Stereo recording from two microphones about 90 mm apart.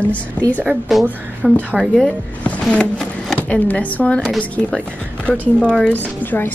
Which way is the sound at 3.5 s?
15° left (ahead or behind).